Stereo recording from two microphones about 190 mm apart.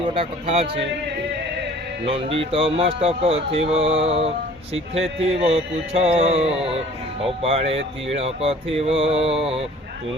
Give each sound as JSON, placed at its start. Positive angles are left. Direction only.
{"t": 0.1, "sound": "speech", "side_deg": -30}
{"t": 2.0, "sound": "speech", "side_deg": -30}